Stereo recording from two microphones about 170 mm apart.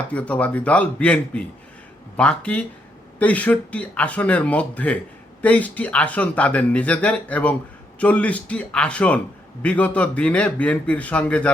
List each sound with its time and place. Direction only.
0.1 s speech: 10° left (ahead or behind)